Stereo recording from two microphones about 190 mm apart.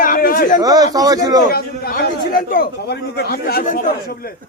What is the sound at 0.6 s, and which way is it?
Speech, 20° right (ahead or behind).